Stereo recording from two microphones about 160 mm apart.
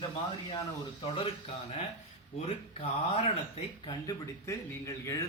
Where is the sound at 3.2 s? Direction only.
35° left (ahead or behind).